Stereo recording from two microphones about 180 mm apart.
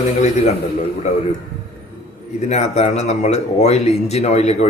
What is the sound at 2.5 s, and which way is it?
Speech, 40° left (ahead or behind).